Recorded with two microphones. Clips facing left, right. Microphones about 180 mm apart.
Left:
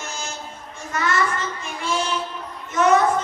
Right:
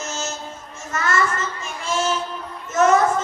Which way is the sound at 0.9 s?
45° right (ahead or behind).